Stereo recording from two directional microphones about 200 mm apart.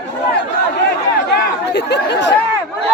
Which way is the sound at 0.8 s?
60° left (ahead or behind).